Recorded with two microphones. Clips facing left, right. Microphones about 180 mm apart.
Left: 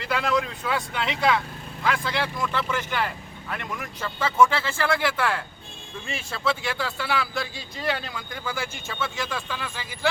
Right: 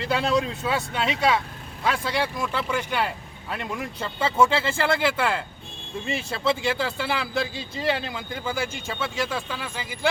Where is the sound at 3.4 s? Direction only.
25° right (ahead or behind).